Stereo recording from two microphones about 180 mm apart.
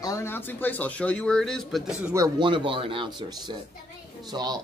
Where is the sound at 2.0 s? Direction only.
20° right (ahead or behind).